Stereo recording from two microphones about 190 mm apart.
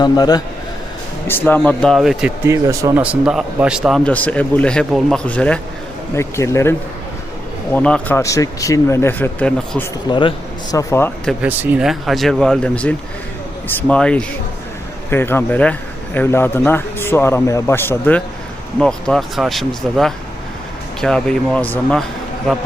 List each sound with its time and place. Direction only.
0.0 s speech: 20° left (ahead or behind)
1.3 s speech: 10° left (ahead or behind)
2.5 s speech: 15° right (ahead or behind); by 9.8 s 10° left (ahead or behind)
10.1 s speech: 25° left (ahead or behind)
11.4 s speech: 10° right (ahead or behind); by 22.0 s 5° left (ahead or behind)